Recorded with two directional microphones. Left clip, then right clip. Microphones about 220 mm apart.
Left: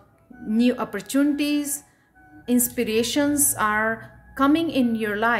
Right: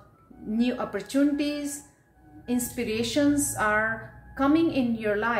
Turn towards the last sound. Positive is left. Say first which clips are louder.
# left 4 dB
turn(degrees=50)  # may be behind; listen again after turning